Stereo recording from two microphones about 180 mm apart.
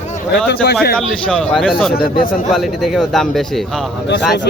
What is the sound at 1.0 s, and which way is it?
Speech, 5° left (ahead or behind).